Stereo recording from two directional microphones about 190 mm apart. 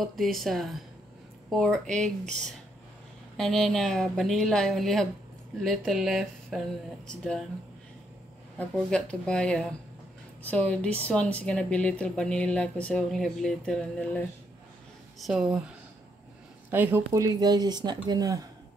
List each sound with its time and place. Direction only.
0.3 s a woman's voice: centre (ahead or behind)
8.5 s a woman's voice: 5° left (ahead or behind)
16.7 s speech: 10° right (ahead or behind)